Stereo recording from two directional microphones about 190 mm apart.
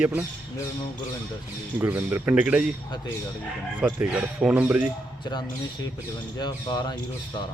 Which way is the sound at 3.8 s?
10° right (ahead or behind).